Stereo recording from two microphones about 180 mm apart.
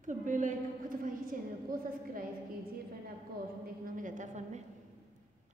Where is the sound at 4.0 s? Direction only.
45° right (ahead or behind).